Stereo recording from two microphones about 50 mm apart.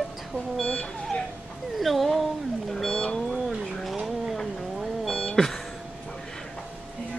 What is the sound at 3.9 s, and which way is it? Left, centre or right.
Vehicle, centre.